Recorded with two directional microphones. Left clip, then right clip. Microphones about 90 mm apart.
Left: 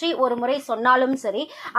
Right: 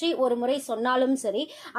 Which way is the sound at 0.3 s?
25° right (ahead or behind).